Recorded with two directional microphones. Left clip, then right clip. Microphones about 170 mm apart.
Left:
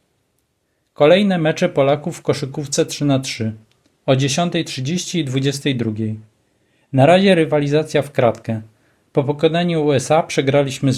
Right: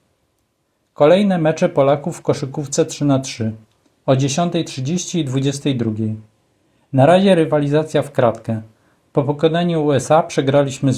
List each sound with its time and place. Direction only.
0.9 s speech: 10° left (ahead or behind)